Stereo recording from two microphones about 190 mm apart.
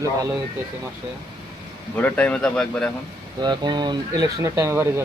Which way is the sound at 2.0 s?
10° left (ahead or behind).